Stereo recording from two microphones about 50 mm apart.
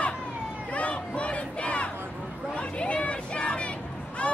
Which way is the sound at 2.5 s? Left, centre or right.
Left.